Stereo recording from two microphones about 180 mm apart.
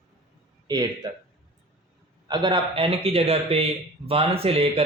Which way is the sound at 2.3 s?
25° right (ahead or behind).